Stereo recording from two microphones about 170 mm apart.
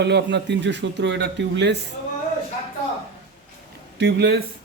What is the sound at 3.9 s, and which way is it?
Speech, 90° right.